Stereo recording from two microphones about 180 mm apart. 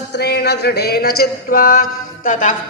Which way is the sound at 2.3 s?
50° left (ahead or behind).